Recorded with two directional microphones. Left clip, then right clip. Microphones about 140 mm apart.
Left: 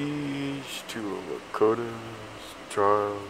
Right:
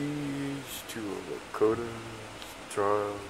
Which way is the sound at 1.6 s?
50° left (ahead or behind).